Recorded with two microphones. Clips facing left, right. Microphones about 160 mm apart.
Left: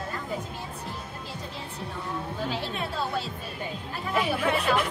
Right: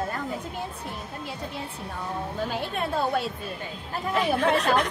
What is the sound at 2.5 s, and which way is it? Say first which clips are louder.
Speech: right 3 dB; 55° right (ahead or behind).